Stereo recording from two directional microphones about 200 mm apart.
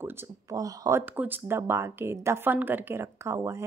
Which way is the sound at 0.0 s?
15° right (ahead or behind).